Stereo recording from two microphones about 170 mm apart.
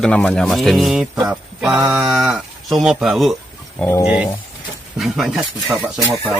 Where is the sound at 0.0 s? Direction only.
5° left (ahead or behind).